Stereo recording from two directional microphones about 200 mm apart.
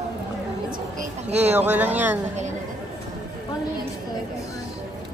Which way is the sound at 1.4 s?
10° right (ahead or behind).